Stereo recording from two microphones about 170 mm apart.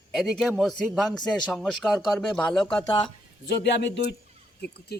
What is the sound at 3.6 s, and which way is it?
Speech, 90° left.